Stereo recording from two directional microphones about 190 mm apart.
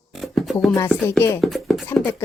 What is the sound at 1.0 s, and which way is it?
Speech, 15° left (ahead or behind).